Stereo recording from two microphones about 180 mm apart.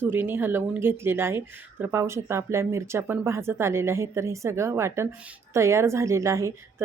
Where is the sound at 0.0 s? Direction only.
10° right (ahead or behind).